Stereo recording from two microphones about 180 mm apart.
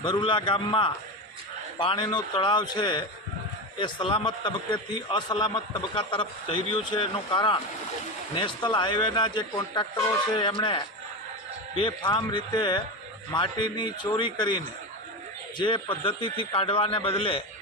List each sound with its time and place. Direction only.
0.0 s a man's voice: 25° left (ahead or behind)